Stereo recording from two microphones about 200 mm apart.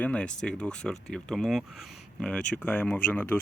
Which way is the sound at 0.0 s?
5° left (ahead or behind).